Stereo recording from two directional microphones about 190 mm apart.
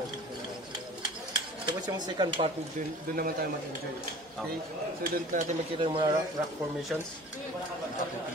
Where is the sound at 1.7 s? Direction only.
25° right (ahead or behind).